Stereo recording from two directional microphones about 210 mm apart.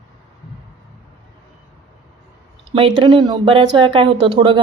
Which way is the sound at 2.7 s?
25° right (ahead or behind).